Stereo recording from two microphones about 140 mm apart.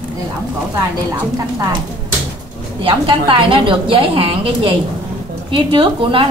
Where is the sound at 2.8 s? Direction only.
40° right (ahead or behind).